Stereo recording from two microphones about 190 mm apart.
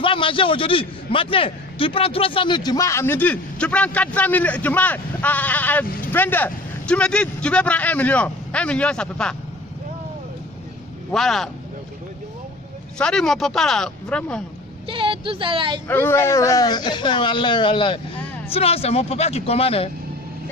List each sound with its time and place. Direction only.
0.0 s a man's voice: 25° left (ahead or behind); by 9.4 s 5° left (ahead or behind)
11.1 s speech: centre (ahead or behind)
12.9 s speech: 5° left (ahead or behind)
14.9 s a woman's voice: 25° right (ahead or behind)
15.9 s a man's voice: 10° left (ahead or behind); by 19.9 s 30° left (ahead or behind)